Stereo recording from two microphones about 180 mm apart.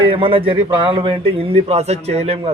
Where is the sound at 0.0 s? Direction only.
30° right (ahead or behind).